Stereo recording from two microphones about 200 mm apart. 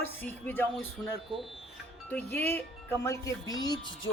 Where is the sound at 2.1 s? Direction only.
10° left (ahead or behind).